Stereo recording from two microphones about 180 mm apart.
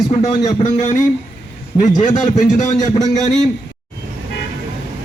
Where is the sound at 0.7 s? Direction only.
40° left (ahead or behind).